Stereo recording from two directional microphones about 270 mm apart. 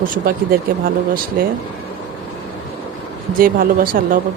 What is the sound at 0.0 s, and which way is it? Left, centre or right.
Speech, right.